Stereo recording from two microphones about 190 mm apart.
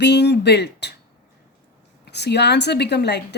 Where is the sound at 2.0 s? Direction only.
60° left (ahead or behind).